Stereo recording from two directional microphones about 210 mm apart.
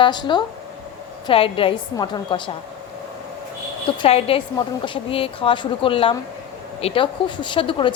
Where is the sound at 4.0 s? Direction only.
30° left (ahead or behind).